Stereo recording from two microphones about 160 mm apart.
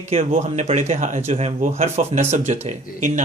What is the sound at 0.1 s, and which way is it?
Speech, 40° right (ahead or behind).